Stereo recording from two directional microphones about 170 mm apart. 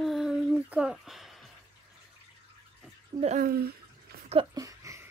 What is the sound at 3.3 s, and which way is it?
Bathtub, 60° right (ahead or behind).